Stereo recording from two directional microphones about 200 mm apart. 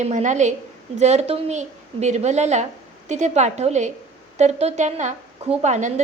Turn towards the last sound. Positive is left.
turn(degrees=-35)  # may be behind; listen again after turning